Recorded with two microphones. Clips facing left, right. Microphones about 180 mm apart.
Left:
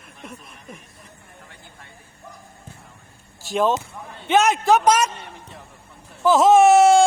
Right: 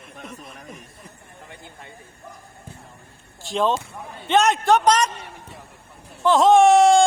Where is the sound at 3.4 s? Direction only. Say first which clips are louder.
Left 1 dB; 5° left (ahead or behind).